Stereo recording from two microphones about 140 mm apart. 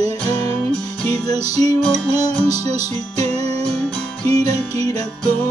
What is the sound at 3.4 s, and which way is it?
Music, 50° right (ahead or behind).